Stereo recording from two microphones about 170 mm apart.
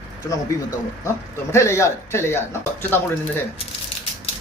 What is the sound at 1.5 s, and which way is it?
Speech, 15° left (ahead or behind).